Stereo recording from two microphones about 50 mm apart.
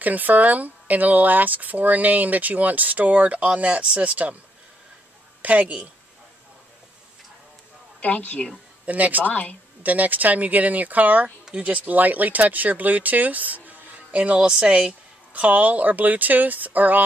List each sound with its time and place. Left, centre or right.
0.0 s speech: right
5.4 s speech: right
8.0 s a woman's voice: left
8.8 s speech: right
9.2 s a woman's voice: left
9.8 s speech: right